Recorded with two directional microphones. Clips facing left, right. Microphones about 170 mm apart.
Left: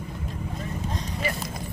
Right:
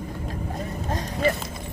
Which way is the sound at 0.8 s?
50° right (ahead or behind).